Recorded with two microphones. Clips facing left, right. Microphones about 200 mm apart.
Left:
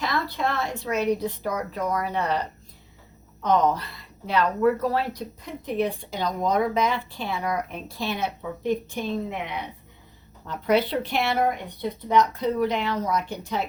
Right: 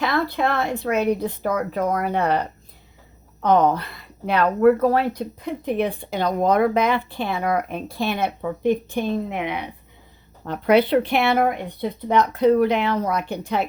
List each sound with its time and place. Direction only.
0.0 s speech: 60° right (ahead or behind)
3.4 s speech: 60° right (ahead or behind)
9.3 s a woman's voice: 70° right (ahead or behind)